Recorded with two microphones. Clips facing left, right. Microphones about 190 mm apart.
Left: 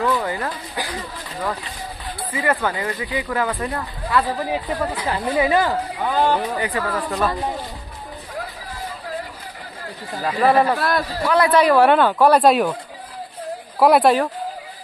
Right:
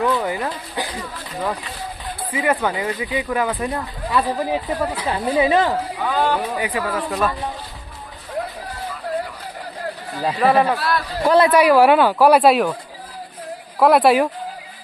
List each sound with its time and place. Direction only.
0.0 s speech: 10° right (ahead or behind)
4.6 s speech: 10° right (ahead or behind)
5.1 s speech: 20° right (ahead or behind)
5.9 s speech: 15° left (ahead or behind)
6.5 s speech: 10° right (ahead or behind)
10.4 s speech: 5° right (ahead or behind)
10.8 s a man's voice: 45° left (ahead or behind)
11.2 s speech: 30° right (ahead or behind)
11.5 s speech: 10° right (ahead or behind)
13.7 s speech: centre (ahead or behind)